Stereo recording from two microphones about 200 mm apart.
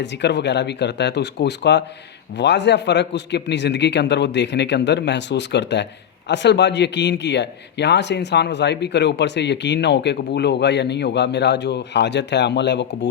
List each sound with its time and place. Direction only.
0.0 s a man's voice: 60° left (ahead or behind)